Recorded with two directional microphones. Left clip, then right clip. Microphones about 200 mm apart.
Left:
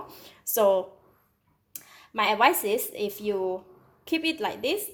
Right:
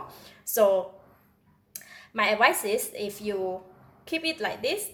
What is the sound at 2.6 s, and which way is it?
Speech, 35° left (ahead or behind).